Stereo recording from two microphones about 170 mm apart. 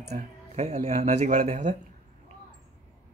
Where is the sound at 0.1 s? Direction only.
40° right (ahead or behind).